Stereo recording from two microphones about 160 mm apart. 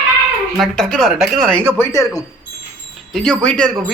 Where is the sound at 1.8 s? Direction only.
20° left (ahead or behind).